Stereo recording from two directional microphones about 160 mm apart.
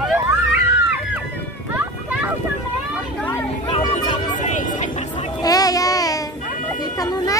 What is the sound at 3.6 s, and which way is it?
Chatter, 35° left (ahead or behind).